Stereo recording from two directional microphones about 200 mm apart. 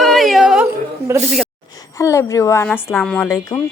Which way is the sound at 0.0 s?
Centre (ahead or behind).